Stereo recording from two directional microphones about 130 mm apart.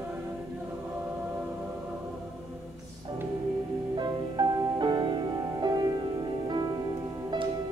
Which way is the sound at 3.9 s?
35° right (ahead or behind).